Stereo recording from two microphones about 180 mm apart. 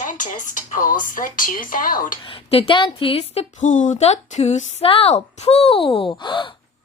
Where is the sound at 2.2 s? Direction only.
30° left (ahead or behind).